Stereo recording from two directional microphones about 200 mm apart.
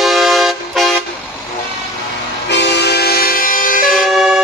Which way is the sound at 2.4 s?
60° left (ahead or behind).